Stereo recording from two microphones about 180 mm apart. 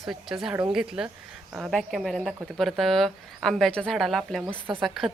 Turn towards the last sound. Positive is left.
turn(degrees=0)  # may be behind; listen again after turning